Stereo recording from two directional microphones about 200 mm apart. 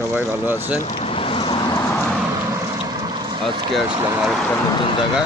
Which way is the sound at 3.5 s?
25° right (ahead or behind).